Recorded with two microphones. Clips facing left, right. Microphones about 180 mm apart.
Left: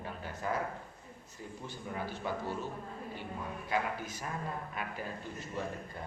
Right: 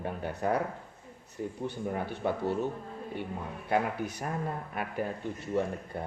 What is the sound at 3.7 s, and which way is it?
Speech, 60° right (ahead or behind).